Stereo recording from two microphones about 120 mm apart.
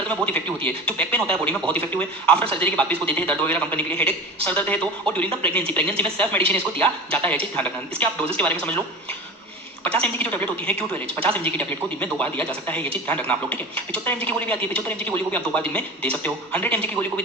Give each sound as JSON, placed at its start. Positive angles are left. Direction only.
{"t": 0.3, "sound": "speech", "side_deg": 10}
{"t": 9.8, "sound": "speech", "side_deg": 15}